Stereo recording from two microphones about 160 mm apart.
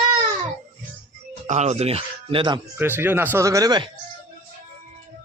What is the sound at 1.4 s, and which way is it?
Speech, 45° right (ahead or behind).